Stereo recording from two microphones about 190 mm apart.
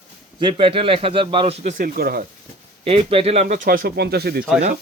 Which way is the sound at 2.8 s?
30° right (ahead or behind).